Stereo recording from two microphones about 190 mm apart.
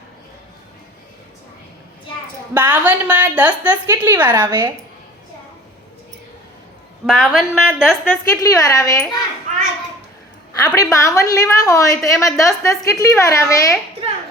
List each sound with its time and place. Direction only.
2.5 s a woman's voice: 10° right (ahead or behind)
4.4 s a woman's voice: 25° right (ahead or behind)
7.1 s a woman's voice: centre (ahead or behind)
8.3 s a woman's voice: 15° left (ahead or behind)
10.8 s a woman's voice: 15° left (ahead or behind)